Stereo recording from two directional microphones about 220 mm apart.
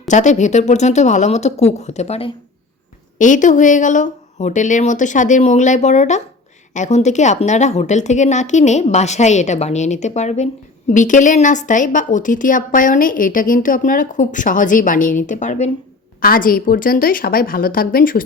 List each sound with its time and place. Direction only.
0.1 s a woman's voice: 35° left (ahead or behind)